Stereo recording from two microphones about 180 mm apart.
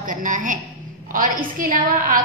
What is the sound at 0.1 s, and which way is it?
Speech, 45° right (ahead or behind).